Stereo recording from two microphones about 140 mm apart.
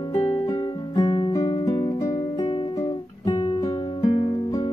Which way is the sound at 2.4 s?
40° left (ahead or behind).